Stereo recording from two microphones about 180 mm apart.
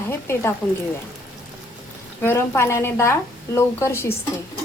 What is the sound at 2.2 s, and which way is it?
A woman's voice, 15° left (ahead or behind).